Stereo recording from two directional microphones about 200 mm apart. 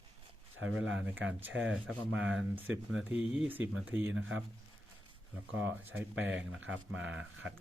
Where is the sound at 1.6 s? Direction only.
5° right (ahead or behind).